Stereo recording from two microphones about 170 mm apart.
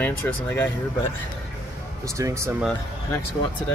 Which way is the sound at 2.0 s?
20° right (ahead or behind).